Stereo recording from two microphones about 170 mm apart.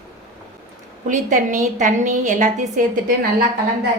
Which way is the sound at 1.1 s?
50° right (ahead or behind).